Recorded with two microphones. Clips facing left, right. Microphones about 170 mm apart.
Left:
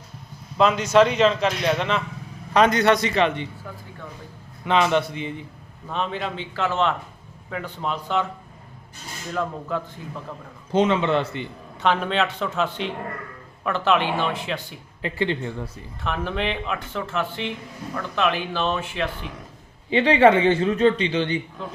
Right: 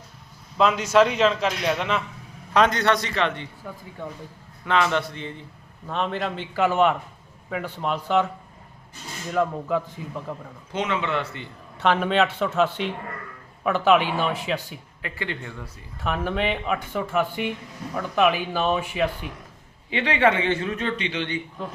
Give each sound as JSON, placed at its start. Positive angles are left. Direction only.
{"t": 0.6, "sound": "a man's voice", "side_deg": -5}
{"t": 2.8, "sound": "a man's voice", "side_deg": 15}
{"t": 4.6, "sound": "a man's voice", "side_deg": 20}
{"t": 5.9, "sound": "speech", "side_deg": 0}
{"t": 9.3, "sound": "speech", "side_deg": -5}
{"t": 10.7, "sound": "a man's voice", "side_deg": 30}
{"t": 11.8, "sound": "speech", "side_deg": -5}
{"t": 15.0, "sound": "a man's voice", "side_deg": 30}
{"t": 16.0, "sound": "speech", "side_deg": -5}
{"t": 19.9, "sound": "a man's voice", "side_deg": 30}